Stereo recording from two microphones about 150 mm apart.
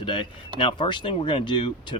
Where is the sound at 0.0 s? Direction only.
30° left (ahead or behind).